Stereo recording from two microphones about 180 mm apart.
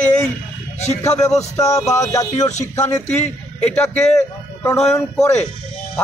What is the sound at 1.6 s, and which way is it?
Speech, 20° left (ahead or behind).